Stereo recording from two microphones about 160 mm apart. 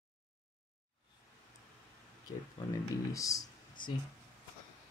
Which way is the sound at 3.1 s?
20° left (ahead or behind).